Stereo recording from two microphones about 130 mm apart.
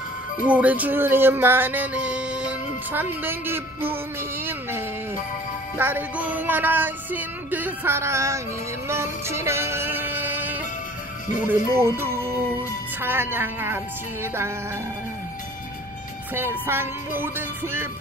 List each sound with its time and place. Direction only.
0.5 s music: 10° right (ahead or behind)
16.3 s music: 15° right (ahead or behind)